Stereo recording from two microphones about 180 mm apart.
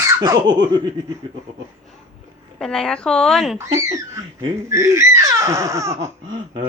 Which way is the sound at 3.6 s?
15° right (ahead or behind).